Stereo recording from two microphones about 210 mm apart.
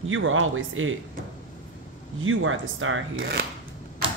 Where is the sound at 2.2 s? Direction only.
70° right (ahead or behind).